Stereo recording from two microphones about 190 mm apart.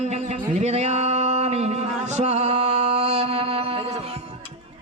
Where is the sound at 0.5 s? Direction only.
35° right (ahead or behind).